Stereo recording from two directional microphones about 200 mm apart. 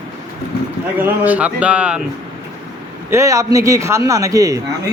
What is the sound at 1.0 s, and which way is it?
Speech, 10° right (ahead or behind).